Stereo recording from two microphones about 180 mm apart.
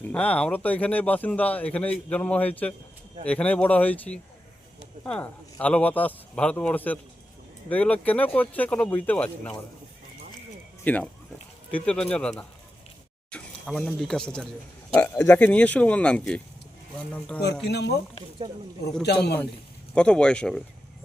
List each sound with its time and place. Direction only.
0.1 s speech: 5° left (ahead or behind)
10.8 s speech: 10° left (ahead or behind)
13.3 s speech: 5° left (ahead or behind)
17.7 s a man's voice: 70° left (ahead or behind)
19.0 s a man's voice: 65° left (ahead or behind)
19.9 s speech: 5° left (ahead or behind)